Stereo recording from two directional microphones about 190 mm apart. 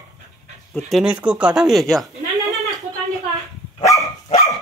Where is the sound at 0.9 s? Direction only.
5° right (ahead or behind).